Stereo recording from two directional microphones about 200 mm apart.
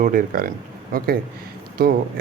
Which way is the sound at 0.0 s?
45° right (ahead or behind).